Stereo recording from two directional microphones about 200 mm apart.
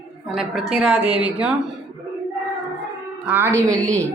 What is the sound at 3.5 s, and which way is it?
Speech, 10° left (ahead or behind).